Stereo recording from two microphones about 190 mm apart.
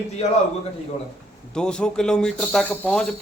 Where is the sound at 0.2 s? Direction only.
35° left (ahead or behind).